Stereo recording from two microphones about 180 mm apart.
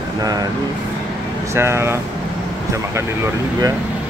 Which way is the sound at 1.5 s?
15° right (ahead or behind).